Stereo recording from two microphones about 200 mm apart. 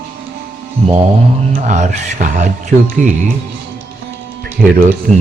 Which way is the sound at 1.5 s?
40° right (ahead or behind).